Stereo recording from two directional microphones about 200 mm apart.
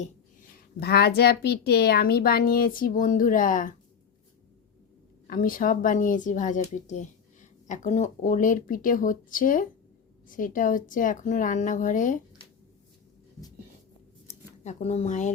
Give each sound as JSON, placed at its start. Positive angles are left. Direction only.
{"t": 0.8, "sound": "a woman's voice", "side_deg": 55}
{"t": 5.3, "sound": "speech", "side_deg": 45}
{"t": 14.3, "sound": "speech", "side_deg": 35}